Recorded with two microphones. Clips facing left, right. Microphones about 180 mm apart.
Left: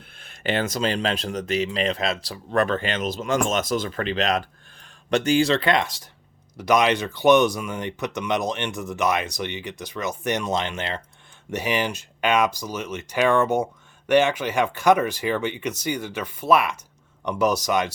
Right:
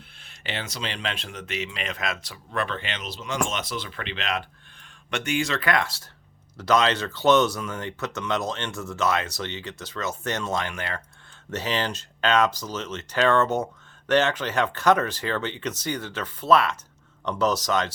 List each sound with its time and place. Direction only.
0.2 s speech: 50° left (ahead or behind); by 2.4 s 30° left (ahead or behind)
2.5 s speech: 45° left (ahead or behind); by 17.9 s 10° left (ahead or behind)